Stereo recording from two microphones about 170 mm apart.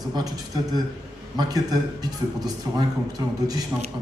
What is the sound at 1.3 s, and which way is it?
A man's voice, 25° right (ahead or behind).